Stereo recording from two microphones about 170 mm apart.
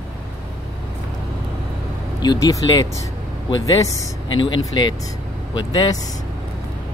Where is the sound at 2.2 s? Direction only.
25° left (ahead or behind).